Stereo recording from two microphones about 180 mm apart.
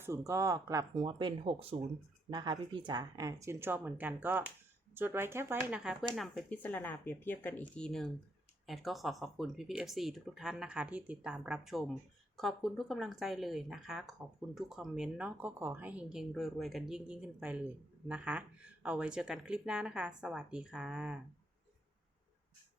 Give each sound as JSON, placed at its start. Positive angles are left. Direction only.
{"t": 0.0, "sound": "a woman's voice", "side_deg": -15}
{"t": 0.9, "sound": "a woman's voice", "side_deg": -30}